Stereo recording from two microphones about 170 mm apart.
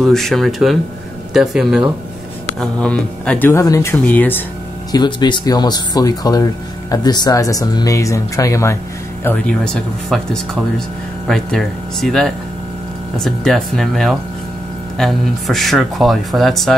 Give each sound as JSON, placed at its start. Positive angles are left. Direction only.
{"t": 0.0, "sound": "speech", "side_deg": 0}
{"t": 4.9, "sound": "speech", "side_deg": 25}